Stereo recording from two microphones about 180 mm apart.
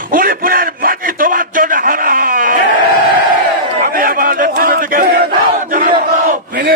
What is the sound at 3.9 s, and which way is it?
Crowd, 50° right (ahead or behind).